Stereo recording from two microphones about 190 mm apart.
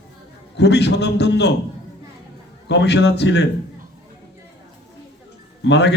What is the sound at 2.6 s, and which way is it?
Speech, 65° left (ahead or behind).